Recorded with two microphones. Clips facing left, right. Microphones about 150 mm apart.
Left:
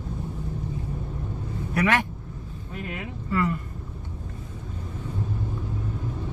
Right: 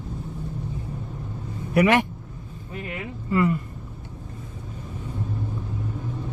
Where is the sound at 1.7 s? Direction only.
15° right (ahead or behind).